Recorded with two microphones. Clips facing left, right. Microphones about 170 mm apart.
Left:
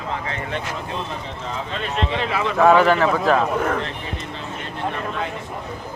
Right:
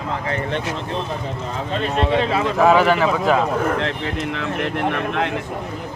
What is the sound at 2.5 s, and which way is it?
Speech, 5° right (ahead or behind).